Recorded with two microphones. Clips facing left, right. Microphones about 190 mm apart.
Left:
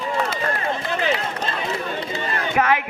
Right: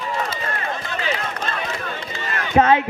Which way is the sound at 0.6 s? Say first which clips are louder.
Left 3 dB; 30° left (ahead or behind).